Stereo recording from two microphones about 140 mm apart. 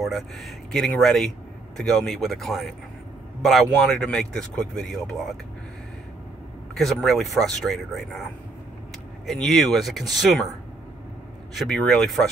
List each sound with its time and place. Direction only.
0.0 s speech: centre (ahead or behind)
3.8 s speech: 5° left (ahead or behind)
6.7 s speech: centre (ahead or behind)
9.2 s speech: centre (ahead or behind)
11.5 s speech: centre (ahead or behind)